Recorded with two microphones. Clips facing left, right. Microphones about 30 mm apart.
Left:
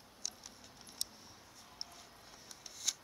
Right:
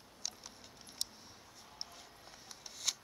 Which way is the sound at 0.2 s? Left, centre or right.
Centre.